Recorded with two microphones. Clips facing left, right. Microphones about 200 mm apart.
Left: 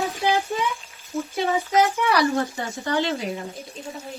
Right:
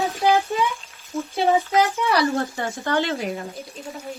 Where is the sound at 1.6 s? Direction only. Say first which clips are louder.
Even; 15° left (ahead or behind).